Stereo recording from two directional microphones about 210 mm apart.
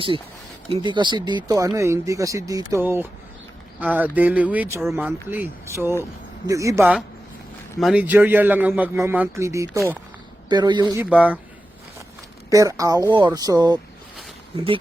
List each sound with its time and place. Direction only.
0.7 s a man's voice: 20° right (ahead or behind)
11.0 s speech: 5° right (ahead or behind)
12.5 s a man's voice: 15° right (ahead or behind)